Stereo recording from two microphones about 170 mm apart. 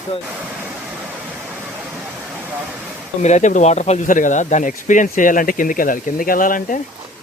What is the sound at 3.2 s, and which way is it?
Speech, 45° left (ahead or behind).